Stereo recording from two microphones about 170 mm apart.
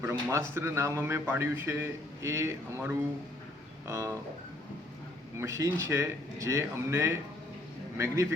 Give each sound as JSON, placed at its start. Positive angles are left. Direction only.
{"t": 0.0, "sound": "speech", "side_deg": -15}
{"t": 5.4, "sound": "speech", "side_deg": -15}